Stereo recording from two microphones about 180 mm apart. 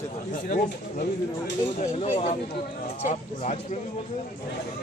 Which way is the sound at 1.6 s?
35° left (ahead or behind).